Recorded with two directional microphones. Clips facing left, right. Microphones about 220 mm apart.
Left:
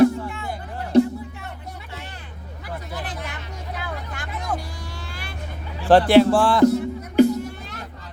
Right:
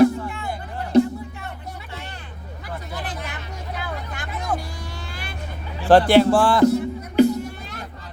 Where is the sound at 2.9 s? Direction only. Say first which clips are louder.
Right 1 dB; centre (ahead or behind).